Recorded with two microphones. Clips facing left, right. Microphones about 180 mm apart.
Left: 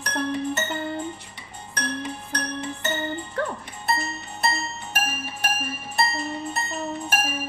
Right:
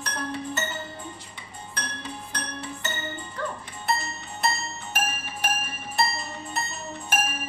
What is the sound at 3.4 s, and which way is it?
Music, 60° left (ahead or behind).